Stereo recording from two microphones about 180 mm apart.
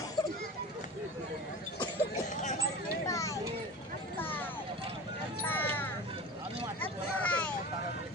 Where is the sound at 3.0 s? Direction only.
20° left (ahead or behind).